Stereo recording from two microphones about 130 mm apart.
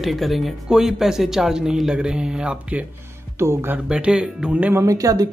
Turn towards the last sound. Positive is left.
turn(degrees=-25)  # may be behind; listen again after turning